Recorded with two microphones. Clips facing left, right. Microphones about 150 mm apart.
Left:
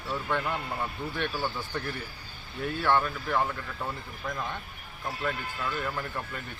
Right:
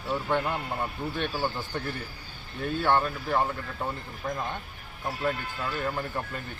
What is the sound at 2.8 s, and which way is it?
Speech, 25° right (ahead or behind).